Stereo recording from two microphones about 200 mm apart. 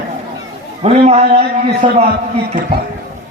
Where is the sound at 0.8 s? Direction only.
35° right (ahead or behind).